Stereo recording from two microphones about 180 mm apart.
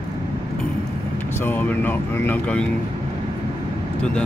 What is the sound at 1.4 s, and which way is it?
Speech, 10° left (ahead or behind).